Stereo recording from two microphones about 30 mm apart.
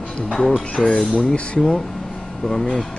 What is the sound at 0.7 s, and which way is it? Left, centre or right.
Speech, left.